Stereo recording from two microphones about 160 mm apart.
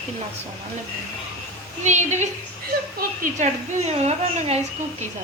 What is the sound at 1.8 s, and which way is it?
A woman's voice, 45° right (ahead or behind).